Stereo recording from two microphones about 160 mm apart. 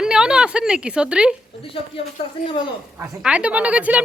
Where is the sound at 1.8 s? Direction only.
35° left (ahead or behind).